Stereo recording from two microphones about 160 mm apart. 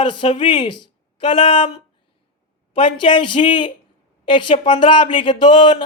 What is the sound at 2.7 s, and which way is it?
A woman's voice, 30° left (ahead or behind).